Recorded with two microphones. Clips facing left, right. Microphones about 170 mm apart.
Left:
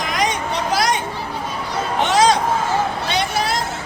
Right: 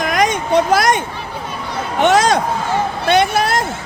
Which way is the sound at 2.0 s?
55° right (ahead or behind).